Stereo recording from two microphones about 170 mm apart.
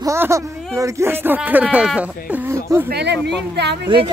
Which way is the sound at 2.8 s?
80° right.